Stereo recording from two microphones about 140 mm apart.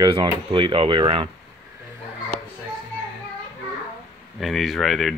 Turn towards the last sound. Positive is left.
turn(degrees=0)  # may be behind; listen again after turning